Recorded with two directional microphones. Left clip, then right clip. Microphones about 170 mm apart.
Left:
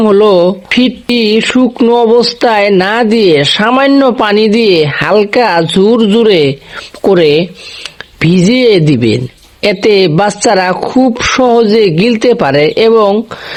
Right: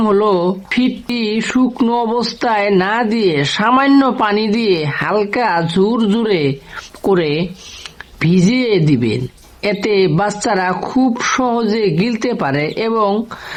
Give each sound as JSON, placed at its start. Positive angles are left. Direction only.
{"t": 0.0, "sound": "a woman's voice", "side_deg": 40}